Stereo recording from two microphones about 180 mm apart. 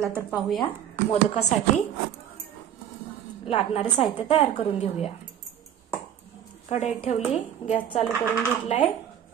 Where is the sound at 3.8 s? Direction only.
5° left (ahead or behind).